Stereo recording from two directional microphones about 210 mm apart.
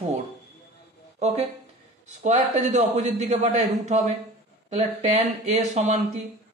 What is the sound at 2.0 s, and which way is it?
A man's voice, 35° right (ahead or behind).